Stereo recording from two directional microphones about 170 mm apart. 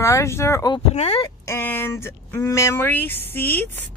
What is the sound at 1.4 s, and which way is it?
Speech, 15° left (ahead or behind).